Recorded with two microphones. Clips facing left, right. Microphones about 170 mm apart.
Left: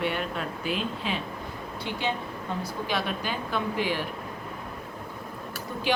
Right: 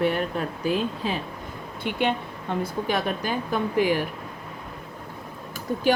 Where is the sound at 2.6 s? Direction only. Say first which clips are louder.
Right 4 dB; 45° right (ahead or behind).